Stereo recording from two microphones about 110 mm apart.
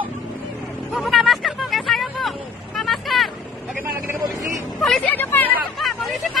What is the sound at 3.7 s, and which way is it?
Vehicle, 20° right (ahead or behind).